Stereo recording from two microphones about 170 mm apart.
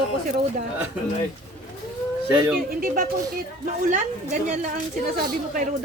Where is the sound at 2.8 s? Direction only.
55° right (ahead or behind).